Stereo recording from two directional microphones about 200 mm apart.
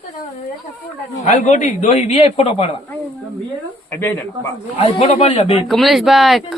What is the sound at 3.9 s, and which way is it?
Speech, 10° left (ahead or behind).